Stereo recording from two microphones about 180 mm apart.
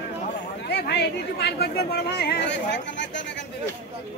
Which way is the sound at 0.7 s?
65° left (ahead or behind).